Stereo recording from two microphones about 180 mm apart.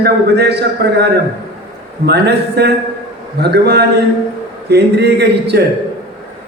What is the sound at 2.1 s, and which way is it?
A man's voice, 65° right (ahead or behind).